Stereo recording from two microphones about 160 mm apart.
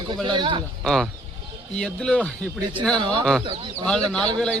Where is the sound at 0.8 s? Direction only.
Centre (ahead or behind).